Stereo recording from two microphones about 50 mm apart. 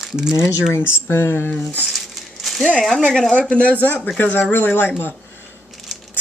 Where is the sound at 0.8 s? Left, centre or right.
Left.